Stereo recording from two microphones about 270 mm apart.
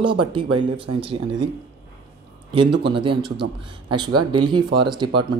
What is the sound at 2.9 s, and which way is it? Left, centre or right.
Speech, centre.